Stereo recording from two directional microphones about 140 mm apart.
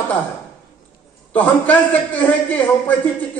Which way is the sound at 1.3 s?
10° left (ahead or behind).